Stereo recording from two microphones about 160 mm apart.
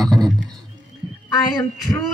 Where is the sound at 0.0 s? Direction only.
Centre (ahead or behind).